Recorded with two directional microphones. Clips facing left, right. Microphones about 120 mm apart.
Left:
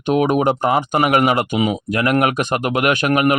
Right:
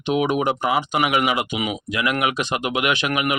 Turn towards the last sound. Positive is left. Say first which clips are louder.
# left 6 dB
turn(degrees=45)  # may be behind; listen again after turning